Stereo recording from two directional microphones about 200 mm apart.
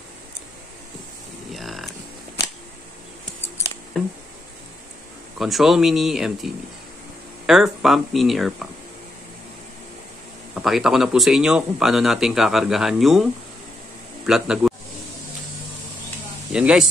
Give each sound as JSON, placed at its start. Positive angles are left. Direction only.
{"t": 1.5, "sound": "a sound", "side_deg": 0}
{"t": 5.4, "sound": "speech", "side_deg": 0}
{"t": 10.5, "sound": "speech", "side_deg": 0}
{"t": 16.5, "sound": "speech", "side_deg": -5}